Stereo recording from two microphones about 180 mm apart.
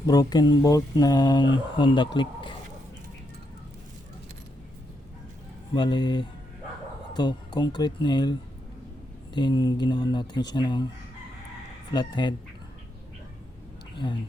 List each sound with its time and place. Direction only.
0.1 s speech: 20° left (ahead or behind)
5.7 s speech: 25° left (ahead or behind)
11.9 s speech: 25° left (ahead or behind)
13.9 s speech: 25° left (ahead or behind)